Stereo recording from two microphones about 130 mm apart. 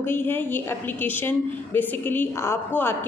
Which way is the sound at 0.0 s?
15° left (ahead or behind).